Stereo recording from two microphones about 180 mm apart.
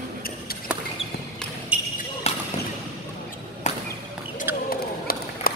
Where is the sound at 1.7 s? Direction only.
5° right (ahead or behind).